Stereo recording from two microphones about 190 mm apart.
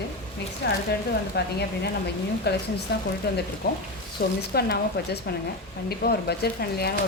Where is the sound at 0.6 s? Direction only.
60° left (ahead or behind).